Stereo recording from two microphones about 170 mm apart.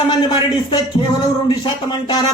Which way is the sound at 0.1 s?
25° left (ahead or behind).